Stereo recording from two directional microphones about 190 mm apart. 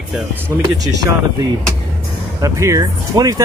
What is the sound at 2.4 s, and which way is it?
Speech, 15° right (ahead or behind).